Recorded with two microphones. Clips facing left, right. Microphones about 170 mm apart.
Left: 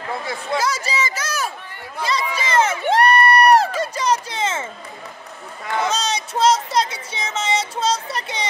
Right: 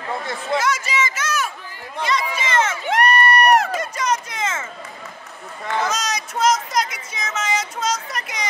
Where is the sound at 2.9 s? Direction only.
30° left (ahead or behind).